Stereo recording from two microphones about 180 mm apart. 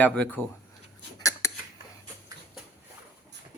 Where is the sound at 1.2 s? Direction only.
15° left (ahead or behind).